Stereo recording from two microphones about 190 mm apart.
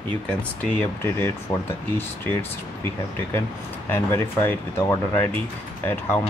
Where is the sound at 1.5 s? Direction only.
15° left (ahead or behind).